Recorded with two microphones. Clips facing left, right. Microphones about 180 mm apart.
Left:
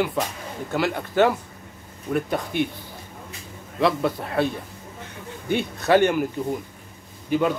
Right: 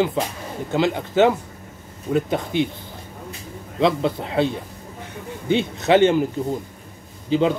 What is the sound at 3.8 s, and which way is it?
Speech, 20° right (ahead or behind).